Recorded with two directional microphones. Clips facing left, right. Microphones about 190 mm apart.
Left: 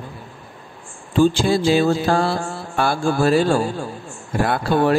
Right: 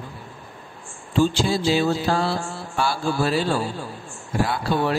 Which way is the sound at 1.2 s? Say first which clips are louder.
Left 4 dB; 50° left (ahead or behind).